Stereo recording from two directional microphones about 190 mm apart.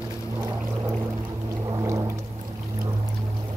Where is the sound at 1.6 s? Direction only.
15° right (ahead or behind).